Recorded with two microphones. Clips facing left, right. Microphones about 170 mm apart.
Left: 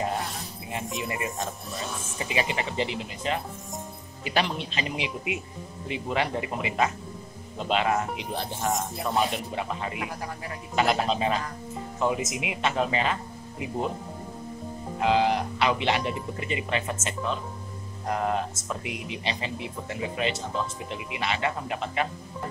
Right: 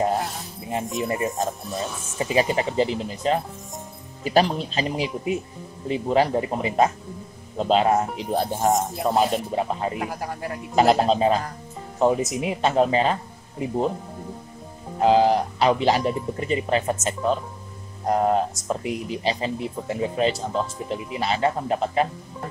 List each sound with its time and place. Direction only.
0.1 s music: centre (ahead or behind)
0.7 s speech: 35° right (ahead or behind)
15.0 s speech: 35° right (ahead or behind)